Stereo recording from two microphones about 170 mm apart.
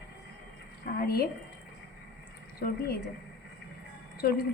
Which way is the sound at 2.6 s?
65° left (ahead or behind).